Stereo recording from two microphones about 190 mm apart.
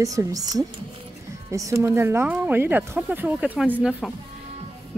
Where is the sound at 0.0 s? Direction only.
15° right (ahead or behind).